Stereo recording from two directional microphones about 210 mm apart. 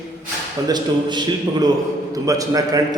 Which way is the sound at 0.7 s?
20° right (ahead or behind).